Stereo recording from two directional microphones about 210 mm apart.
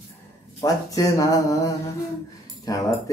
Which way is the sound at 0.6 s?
15° left (ahead or behind).